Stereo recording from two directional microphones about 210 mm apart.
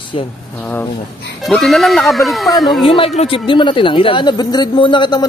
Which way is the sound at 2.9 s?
25° left (ahead or behind).